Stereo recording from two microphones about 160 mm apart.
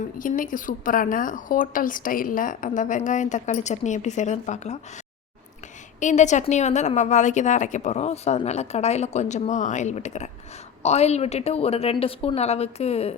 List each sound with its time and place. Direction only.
0.2 s a woman's voice: 60° left (ahead or behind)
6.0 s a woman's voice: 50° left (ahead or behind)